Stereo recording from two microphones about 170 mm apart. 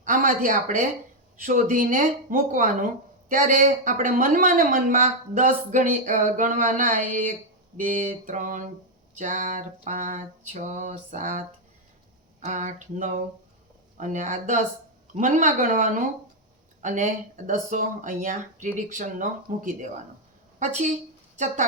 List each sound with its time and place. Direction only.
0.0 s speech: 50° right (ahead or behind)
12.5 s a woman's voice: 45° right (ahead or behind)